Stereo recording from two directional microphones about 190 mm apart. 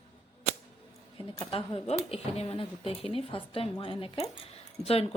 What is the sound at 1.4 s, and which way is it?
Speech, 30° left (ahead or behind).